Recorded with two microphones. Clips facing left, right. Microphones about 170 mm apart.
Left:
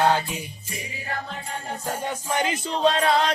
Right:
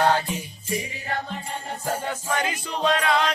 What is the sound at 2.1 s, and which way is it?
Music, 20° left (ahead or behind).